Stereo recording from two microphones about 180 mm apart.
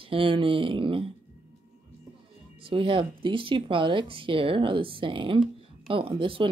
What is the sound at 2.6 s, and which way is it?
Speech, 30° right (ahead or behind).